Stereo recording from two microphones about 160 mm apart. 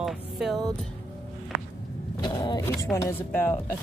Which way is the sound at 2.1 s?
25° left (ahead or behind).